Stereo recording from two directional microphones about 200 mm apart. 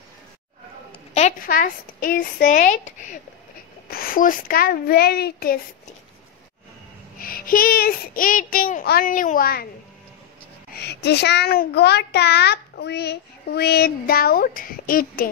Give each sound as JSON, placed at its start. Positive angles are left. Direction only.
{"t": 1.1, "sound": "speech", "side_deg": 40}
{"t": 3.9, "sound": "child singing", "side_deg": 45}
{"t": 7.2, "sound": "child singing", "side_deg": 45}
{"t": 10.8, "sound": "a child's voice", "side_deg": 55}